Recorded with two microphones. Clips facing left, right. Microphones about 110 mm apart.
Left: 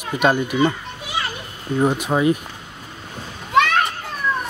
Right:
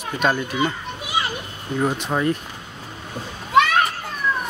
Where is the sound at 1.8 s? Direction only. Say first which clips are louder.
Left 4 dB; 10° left (ahead or behind).